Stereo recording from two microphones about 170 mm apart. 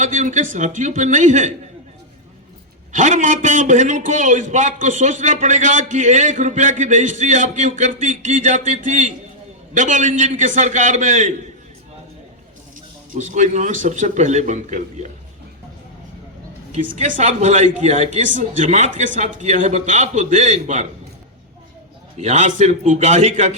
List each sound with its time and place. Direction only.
0.0 s a man's voice: 45° right (ahead or behind)
2.9 s a man's voice: 45° right (ahead or behind)
13.1 s a man's voice: 45° right (ahead or behind)
16.8 s a man's voice: 50° right (ahead or behind)
22.2 s a man's voice: 45° right (ahead or behind)